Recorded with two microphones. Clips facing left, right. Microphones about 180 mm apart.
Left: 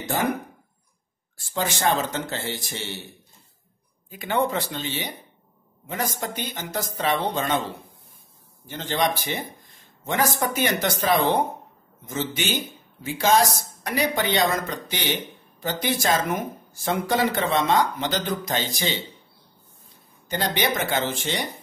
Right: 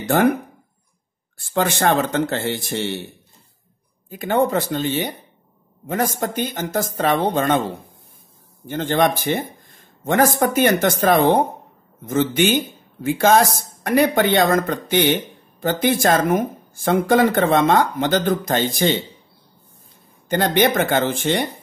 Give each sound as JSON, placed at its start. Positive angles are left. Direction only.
{"t": 1.5, "sound": "speech", "side_deg": -60}
{"t": 4.1, "sound": "speech", "side_deg": -45}
{"t": 8.6, "sound": "speech", "side_deg": -55}
{"t": 20.2, "sound": "speech", "side_deg": -55}